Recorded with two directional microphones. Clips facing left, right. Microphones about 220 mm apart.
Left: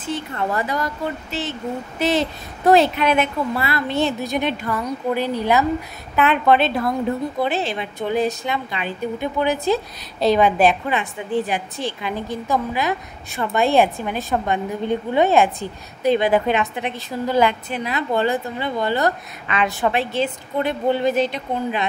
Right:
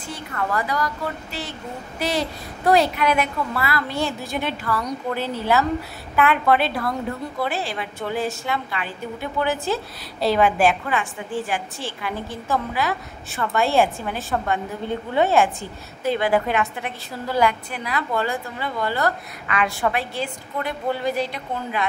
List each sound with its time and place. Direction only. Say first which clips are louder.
0.0 s a woman's voice: left 4 dB; 25° left (ahead or behind)